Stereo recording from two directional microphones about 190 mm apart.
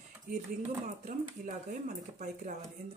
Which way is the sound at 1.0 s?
45° right (ahead or behind).